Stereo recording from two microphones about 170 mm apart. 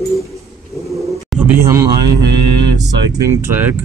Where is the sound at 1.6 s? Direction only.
15° right (ahead or behind).